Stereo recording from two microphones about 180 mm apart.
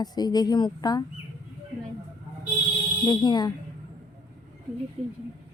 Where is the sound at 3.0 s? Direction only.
25° left (ahead or behind).